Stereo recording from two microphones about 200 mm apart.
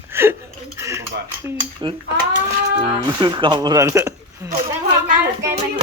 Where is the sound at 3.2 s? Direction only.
25° right (ahead or behind).